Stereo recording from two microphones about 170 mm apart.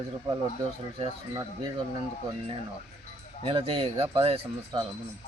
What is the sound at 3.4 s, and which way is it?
A man's voice, 30° right (ahead or behind).